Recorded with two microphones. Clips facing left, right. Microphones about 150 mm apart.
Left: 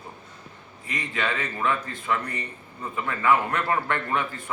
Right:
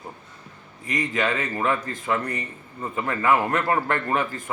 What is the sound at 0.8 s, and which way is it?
A man's voice, 45° right (ahead or behind).